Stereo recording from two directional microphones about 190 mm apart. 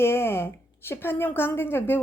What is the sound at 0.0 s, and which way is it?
A woman's voice, 10° left (ahead or behind).